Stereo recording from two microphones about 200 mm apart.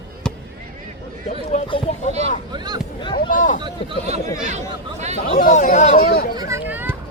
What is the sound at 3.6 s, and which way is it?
Speech, 25° right (ahead or behind).